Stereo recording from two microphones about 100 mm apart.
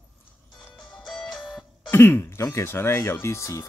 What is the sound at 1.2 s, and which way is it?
Music, centre (ahead or behind).